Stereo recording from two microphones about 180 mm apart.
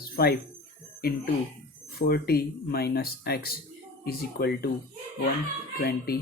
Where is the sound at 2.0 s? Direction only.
60° left (ahead or behind).